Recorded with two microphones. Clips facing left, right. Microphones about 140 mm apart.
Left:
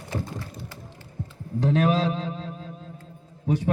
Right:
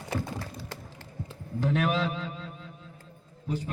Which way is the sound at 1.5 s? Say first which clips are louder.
Left 5 dB; 35° left (ahead or behind).